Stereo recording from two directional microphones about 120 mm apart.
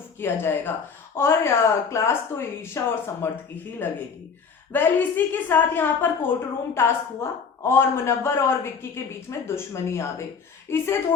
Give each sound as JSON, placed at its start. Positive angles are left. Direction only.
{"t": 0.2, "sound": "a woman's voice", "side_deg": 20}